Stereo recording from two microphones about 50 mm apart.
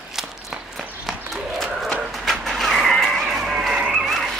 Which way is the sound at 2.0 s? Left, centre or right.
Centre.